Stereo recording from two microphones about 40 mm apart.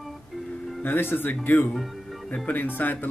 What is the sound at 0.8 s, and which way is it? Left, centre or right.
Speech, left.